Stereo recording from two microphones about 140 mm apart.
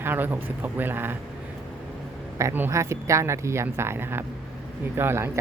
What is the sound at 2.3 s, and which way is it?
Speech, 20° right (ahead or behind).